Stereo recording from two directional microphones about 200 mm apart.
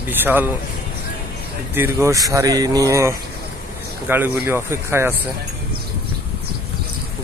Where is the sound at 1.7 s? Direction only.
10° right (ahead or behind).